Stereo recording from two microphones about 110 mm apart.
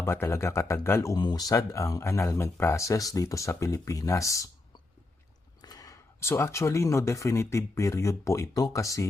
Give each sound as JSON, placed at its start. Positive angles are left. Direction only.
{"t": 0.0, "sound": "speech", "side_deg": 25}
{"t": 1.1, "sound": "speech", "side_deg": 35}
{"t": 5.6, "sound": "speech", "side_deg": 35}